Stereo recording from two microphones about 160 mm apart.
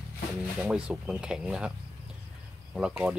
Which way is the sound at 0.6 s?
5° right (ahead or behind).